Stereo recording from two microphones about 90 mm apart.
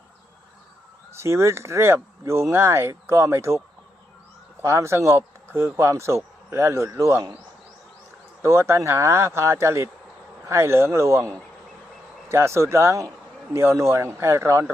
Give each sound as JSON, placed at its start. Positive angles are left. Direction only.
{"t": 1.1, "sound": "speech", "side_deg": -30}
{"t": 4.6, "sound": "speech", "side_deg": -30}
{"t": 8.4, "sound": "speech", "side_deg": -30}